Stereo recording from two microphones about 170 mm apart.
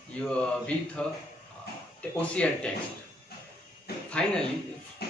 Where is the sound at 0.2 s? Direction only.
5° left (ahead or behind).